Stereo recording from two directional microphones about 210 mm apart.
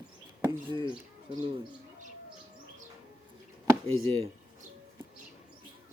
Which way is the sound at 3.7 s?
25° right (ahead or behind).